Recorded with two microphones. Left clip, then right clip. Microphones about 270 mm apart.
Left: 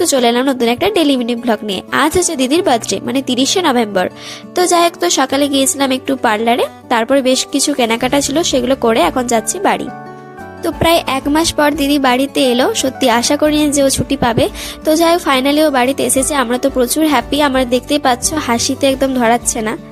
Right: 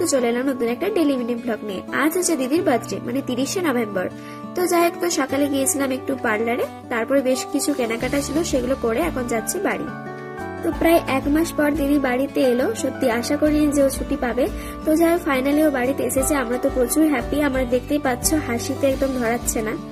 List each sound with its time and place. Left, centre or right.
0.1 s a woman's voice: left
10.8 s a woman's voice: left